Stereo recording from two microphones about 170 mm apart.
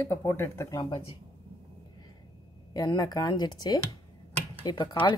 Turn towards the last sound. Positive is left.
turn(degrees=25)  # may be behind; listen again after turning